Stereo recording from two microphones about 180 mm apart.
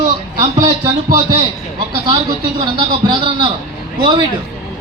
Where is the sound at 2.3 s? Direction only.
25° right (ahead or behind).